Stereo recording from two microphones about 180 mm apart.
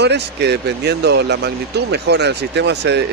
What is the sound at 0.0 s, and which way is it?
Speech, 70° right (ahead or behind).